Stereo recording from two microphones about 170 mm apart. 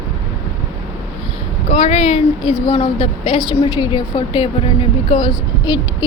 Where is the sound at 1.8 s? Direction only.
35° left (ahead or behind).